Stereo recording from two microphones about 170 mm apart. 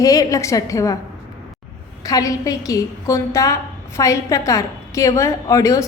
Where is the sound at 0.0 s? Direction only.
20° left (ahead or behind).